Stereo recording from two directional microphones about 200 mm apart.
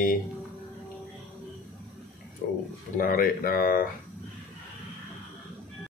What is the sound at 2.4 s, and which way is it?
Speech, 50° left (ahead or behind).